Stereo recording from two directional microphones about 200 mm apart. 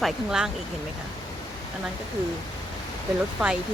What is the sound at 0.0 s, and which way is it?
Speech, 5° right (ahead or behind).